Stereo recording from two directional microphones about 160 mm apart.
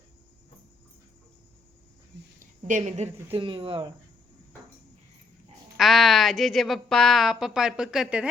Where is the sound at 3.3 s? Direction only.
30° right (ahead or behind).